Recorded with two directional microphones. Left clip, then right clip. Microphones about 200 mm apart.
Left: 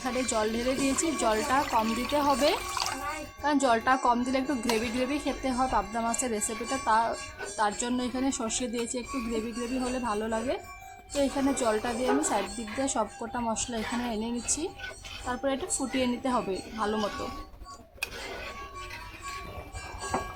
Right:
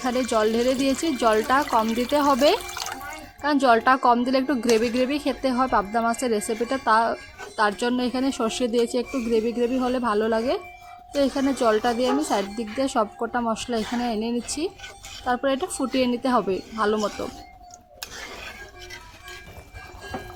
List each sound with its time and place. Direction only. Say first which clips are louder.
0.0 s a woman's voice: right 7 dB; 20° right (ahead or behind)
3.4 s a woman's voice: right 7 dB; 20° right (ahead or behind)